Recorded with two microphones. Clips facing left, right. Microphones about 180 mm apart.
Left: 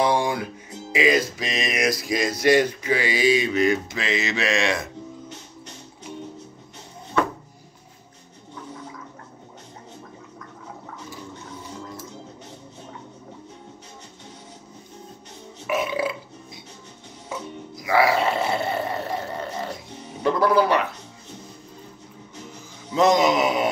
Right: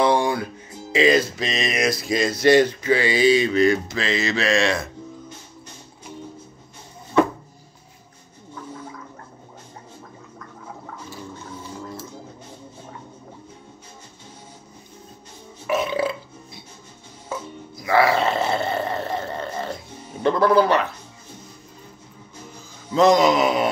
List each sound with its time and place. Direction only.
0.0 s music: 10° left (ahead or behind)
0.9 s speech: 10° left (ahead or behind)
15.6 s burping: 10° left (ahead or behind)
17.7 s burping: 10° left (ahead or behind)
20.2 s music: 10° left (ahead or behind)
22.8 s a sound: 20° left (ahead or behind)